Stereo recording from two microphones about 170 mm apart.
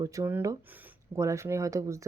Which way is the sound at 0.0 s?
20° right (ahead or behind).